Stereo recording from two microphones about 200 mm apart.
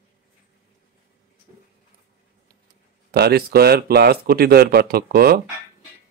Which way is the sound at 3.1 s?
50° right (ahead or behind).